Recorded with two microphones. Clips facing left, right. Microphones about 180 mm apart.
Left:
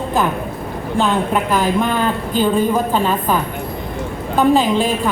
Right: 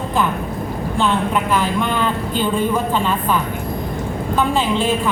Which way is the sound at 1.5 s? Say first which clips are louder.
Left 2 dB; 40° left (ahead or behind).